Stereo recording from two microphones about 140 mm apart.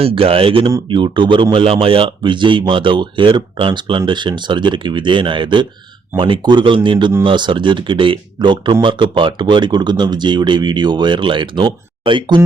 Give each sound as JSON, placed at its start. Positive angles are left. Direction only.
{"t": 0.0, "sound": "speech", "side_deg": -40}